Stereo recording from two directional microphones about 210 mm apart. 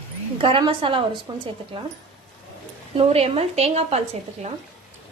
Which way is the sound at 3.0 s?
30° right (ahead or behind).